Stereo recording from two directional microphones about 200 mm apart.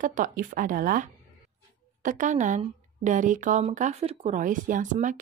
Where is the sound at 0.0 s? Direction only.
40° right (ahead or behind).